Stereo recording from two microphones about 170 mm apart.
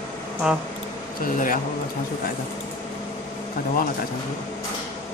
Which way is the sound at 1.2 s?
50° left (ahead or behind).